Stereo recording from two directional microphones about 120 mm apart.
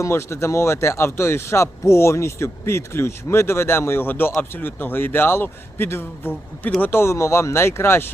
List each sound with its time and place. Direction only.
0.0 s speech: 25° left (ahead or behind)